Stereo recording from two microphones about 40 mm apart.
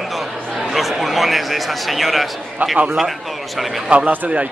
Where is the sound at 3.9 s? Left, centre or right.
Right.